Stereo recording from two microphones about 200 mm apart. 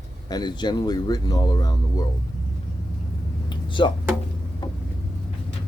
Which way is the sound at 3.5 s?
25° left (ahead or behind).